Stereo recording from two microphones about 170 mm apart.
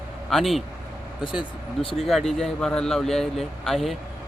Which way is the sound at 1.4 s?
30° left (ahead or behind).